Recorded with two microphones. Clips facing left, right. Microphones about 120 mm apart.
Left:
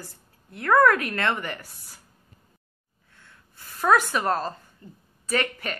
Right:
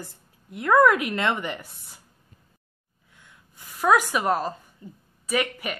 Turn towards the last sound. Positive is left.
turn(degrees=-10)  # may be behind; listen again after turning